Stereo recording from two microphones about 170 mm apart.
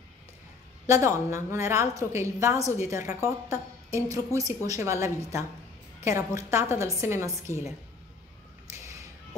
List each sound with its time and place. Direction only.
0.8 s a woman's voice: 15° right (ahead or behind)